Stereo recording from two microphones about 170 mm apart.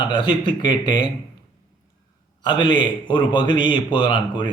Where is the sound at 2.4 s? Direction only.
25° left (ahead or behind).